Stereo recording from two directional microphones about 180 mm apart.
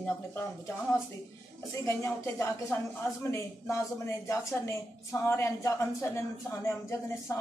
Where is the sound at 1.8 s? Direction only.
15° left (ahead or behind).